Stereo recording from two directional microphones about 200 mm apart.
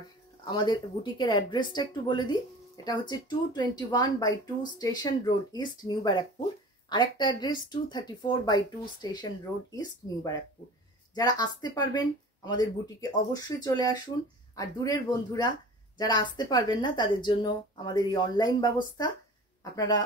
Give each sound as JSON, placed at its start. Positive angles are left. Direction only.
{"t": 0.5, "sound": "speech", "side_deg": 25}